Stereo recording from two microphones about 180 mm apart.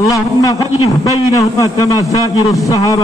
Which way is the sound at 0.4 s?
20° left (ahead or behind).